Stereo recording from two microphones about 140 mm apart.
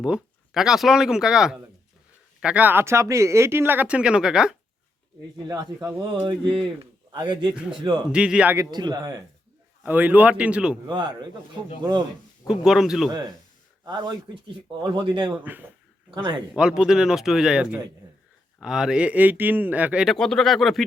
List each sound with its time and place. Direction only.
0.0 s speech: 5° right (ahead or behind)
5.5 s a man's voice: 25° right (ahead or behind)
6.2 s a man's voice: 35° right (ahead or behind)
8.1 s speech: 5° right (ahead or behind)
8.5 s a man's voice: 30° right (ahead or behind)
9.8 s speech: 10° right (ahead or behind)
10.8 s a man's voice: 35° right (ahead or behind)
12.5 s speech: 5° right (ahead or behind)
13.1 s a man's voice: 30° right (ahead or behind)
16.6 s speech: 5° right (ahead or behind)
20.1 s speech: 5° left (ahead or behind)